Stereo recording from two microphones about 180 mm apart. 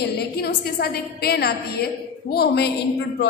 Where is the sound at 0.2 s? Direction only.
60° left (ahead or behind).